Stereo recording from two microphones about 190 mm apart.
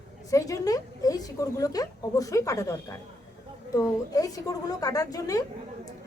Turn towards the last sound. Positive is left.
turn(degrees=20)  # may be behind; listen again after turning